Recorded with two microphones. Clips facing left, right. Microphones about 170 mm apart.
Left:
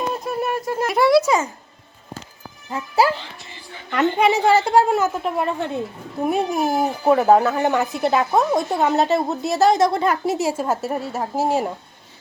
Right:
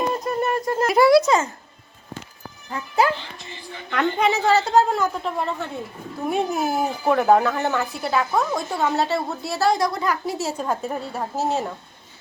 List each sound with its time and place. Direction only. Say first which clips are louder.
0.1 s speech: right 1 dB; 5° left (ahead or behind)
2.6 s speech: left 3 dB; 25° left (ahead or behind)
3.9 s speech: left 3 dB; 10° left (ahead or behind)
6.3 s speech: even; centre (ahead or behind)
6.6 s a child's voice: left 3 dB; 40° left (ahead or behind)
7.0 s a woman's voice: left 2 dB; 5° left (ahead or behind)
10.5 s speech: left 3 dB; 5° left (ahead or behind)